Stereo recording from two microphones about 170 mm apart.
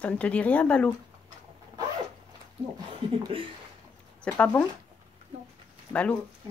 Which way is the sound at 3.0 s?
30° right (ahead or behind).